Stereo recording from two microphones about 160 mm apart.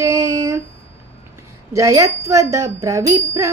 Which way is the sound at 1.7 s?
20° right (ahead or behind).